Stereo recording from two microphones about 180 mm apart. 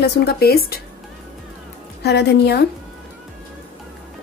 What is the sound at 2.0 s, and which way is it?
Speech, 65° left (ahead or behind).